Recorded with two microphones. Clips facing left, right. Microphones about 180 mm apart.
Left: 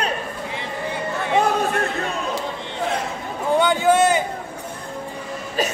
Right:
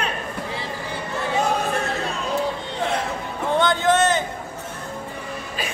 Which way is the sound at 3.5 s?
10° left (ahead or behind).